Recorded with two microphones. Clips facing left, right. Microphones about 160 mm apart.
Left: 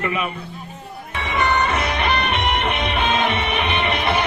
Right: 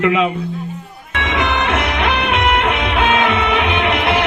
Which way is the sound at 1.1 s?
90° right.